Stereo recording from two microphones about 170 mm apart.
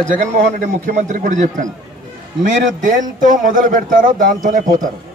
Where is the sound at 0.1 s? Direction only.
45° right (ahead or behind).